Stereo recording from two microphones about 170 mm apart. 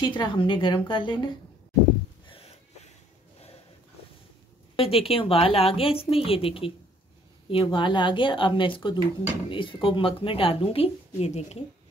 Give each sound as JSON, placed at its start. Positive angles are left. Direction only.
{"t": 0.0, "sound": "speech", "side_deg": 30}
{"t": 2.2, "sound": "a sound", "side_deg": 35}
{"t": 4.7, "sound": "a woman's voice", "side_deg": 35}